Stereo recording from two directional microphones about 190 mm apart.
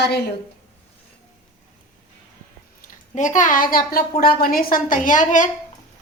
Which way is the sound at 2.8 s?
40° left (ahead or behind).